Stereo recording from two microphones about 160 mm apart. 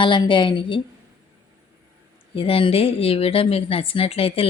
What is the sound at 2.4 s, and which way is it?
Speech, 35° left (ahead or behind).